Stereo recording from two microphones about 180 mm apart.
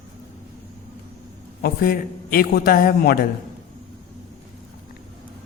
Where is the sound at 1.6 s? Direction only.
55° left (ahead or behind).